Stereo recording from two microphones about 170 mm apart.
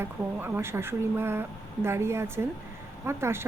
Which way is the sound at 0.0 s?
15° right (ahead or behind).